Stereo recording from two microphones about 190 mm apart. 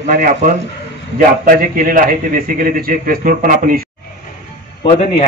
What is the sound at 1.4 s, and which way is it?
Speech, 45° right (ahead or behind).